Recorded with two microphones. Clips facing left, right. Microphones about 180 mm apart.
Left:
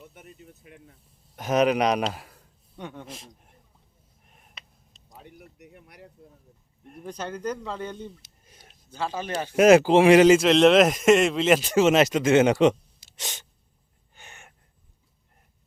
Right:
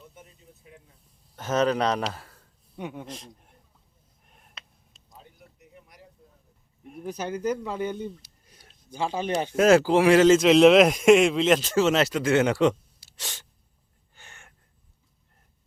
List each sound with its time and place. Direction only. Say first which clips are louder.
0.1 s a sound: left 4 dB; 70° left (ahead or behind)
1.4 s speech: left 2 dB; 15° left (ahead or behind)
2.7 s speech: right 3 dB; 10° right (ahead or behind)
3.1 s a man's voice: right 2 dB; 5° left (ahead or behind)
4.3 s a sound: even; centre (ahead or behind)
5.1 s a sound: left 5 dB; 70° left (ahead or behind)
6.8 s speech: right 2 dB; 5° right (ahead or behind)
8.2 s a sound: left 2 dB; 20° left (ahead or behind)
8.9 s speech: right 3 dB; 15° right (ahead or behind)
9.6 s speech: left 3 dB; 20° left (ahead or behind)
10.4 s speech: right 1 dB; centre (ahead or behind); by 13.4 s 20° left (ahead or behind)
14.2 s gasp: left 3 dB; 20° left (ahead or behind)